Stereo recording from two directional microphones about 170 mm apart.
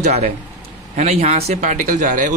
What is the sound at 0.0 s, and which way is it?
A man's voice, 40° right (ahead or behind).